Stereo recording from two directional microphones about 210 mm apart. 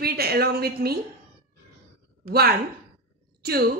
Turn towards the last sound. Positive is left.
turn(degrees=-50)  # may be behind; listen again after turning